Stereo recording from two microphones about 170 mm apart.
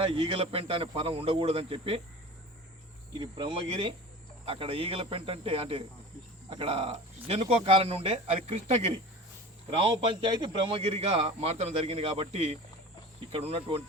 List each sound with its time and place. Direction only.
0.1 s a man's voice: 30° right (ahead or behind)
3.2 s cricket: 25° right (ahead or behind)
4.4 s a man's voice: 35° right (ahead or behind)